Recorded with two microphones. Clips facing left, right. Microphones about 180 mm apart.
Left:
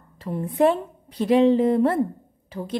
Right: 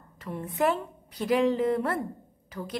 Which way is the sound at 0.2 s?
30° left (ahead or behind).